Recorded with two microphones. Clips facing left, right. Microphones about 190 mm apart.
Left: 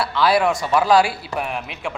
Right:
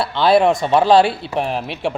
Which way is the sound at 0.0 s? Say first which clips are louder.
Right 4 dB; 25° right (ahead or behind).